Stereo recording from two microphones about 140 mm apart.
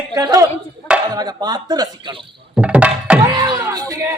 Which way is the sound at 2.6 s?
10° right (ahead or behind).